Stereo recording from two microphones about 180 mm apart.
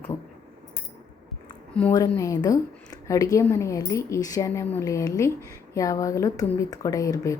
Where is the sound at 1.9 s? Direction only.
20° left (ahead or behind).